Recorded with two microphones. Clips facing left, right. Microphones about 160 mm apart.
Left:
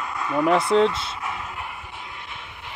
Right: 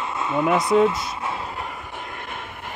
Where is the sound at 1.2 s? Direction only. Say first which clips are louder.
Right 3 dB; 30° right (ahead or behind); by 2.7 s 50° right (ahead or behind).